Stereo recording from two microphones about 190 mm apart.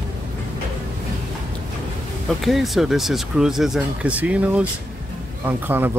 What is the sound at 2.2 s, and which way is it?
Speech, centre (ahead or behind).